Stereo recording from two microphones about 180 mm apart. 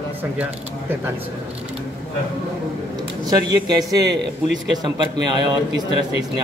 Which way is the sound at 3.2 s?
20° right (ahead or behind).